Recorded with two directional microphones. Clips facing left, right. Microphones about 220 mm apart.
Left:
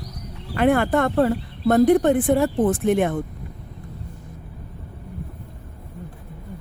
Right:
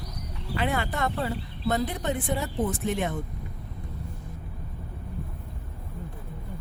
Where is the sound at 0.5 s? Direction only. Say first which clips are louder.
Left 11 dB; 55° left (ahead or behind).